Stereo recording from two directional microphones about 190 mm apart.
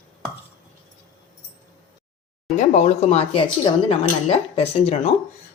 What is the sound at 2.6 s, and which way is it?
A woman's voice, 40° left (ahead or behind).